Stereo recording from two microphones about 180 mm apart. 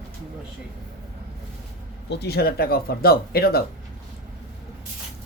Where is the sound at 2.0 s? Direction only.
65° left (ahead or behind).